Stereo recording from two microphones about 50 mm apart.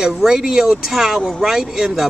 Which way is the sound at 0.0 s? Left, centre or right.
Centre.